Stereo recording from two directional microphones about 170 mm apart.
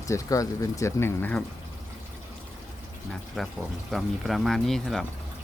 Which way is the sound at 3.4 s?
5° left (ahead or behind).